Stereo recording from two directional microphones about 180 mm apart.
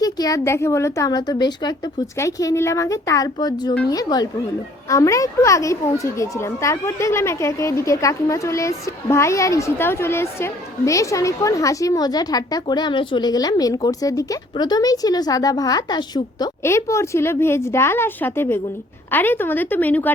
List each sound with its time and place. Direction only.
0.0 s a child's voice: 20° left (ahead or behind)